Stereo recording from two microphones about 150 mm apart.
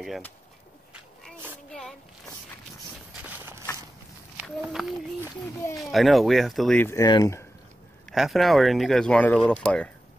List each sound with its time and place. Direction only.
1.7 s a sound: 5° left (ahead or behind)
3.2 s walk: 10° right (ahead or behind)
4.8 s speech: 5° left (ahead or behind)
6.8 s speech: 20° left (ahead or behind)
8.1 s speech: centre (ahead or behind)